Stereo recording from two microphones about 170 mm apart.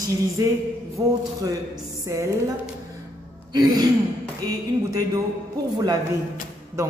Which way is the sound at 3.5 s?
25° right (ahead or behind).